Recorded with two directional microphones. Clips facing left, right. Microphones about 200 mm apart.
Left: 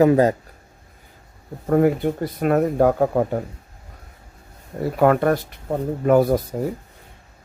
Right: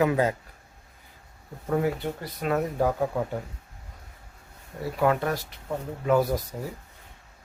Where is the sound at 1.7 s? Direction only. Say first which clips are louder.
Left 9 dB; 50° left (ahead or behind).